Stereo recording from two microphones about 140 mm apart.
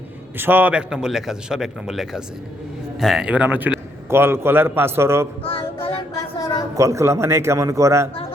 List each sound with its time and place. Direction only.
0.3 s a man's voice: 15° right (ahead or behind)
5.4 s child singing: 40° left (ahead or behind)
6.7 s a man's voice: 20° right (ahead or behind)